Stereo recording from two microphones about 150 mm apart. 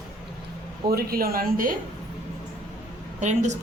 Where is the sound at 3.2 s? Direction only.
50° right (ahead or behind).